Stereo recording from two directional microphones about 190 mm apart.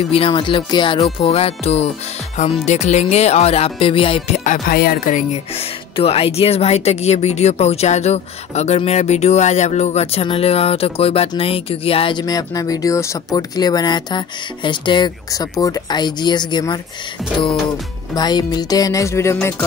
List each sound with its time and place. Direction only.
0.1 s music: 25° left (ahead or behind)
1.1 s speech: 30° left (ahead or behind)
4.5 s speech: 50° left (ahead or behind); by 16.8 s 20° left (ahead or behind)
17.2 s a sound: centre (ahead or behind)
18.1 s music: 20° left (ahead or behind)